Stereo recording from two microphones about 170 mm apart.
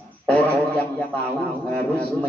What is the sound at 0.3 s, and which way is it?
A man's voice, 10° left (ahead or behind).